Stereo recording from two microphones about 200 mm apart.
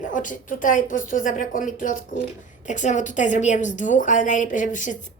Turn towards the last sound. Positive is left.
turn(degrees=40)  # may be behind; listen again after turning